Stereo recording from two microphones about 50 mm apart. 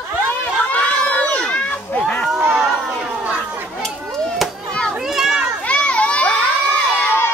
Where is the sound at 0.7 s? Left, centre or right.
Left.